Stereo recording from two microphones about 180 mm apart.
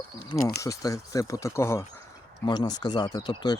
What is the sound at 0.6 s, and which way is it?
Speech, 20° left (ahead or behind).